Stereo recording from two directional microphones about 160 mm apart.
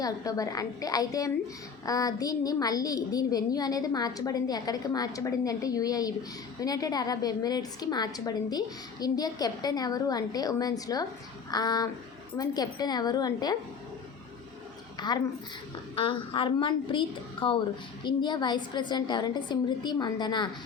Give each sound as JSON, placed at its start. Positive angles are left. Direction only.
{"t": 0.0, "sound": "a woman's voice", "side_deg": 20}
{"t": 14.9, "sound": "a woman's voice", "side_deg": 25}